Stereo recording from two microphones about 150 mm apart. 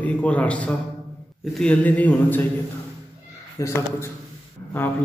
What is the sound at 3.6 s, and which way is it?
Speech, 25° left (ahead or behind).